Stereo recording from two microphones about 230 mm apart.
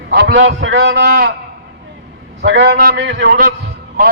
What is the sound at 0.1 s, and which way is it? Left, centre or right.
A man's voice, right.